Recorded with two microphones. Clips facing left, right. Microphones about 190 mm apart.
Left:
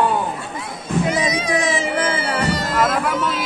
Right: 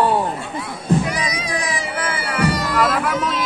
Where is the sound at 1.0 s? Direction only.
25° left (ahead or behind).